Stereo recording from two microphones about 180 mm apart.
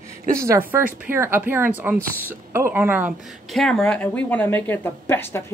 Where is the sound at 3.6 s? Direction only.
5° left (ahead or behind).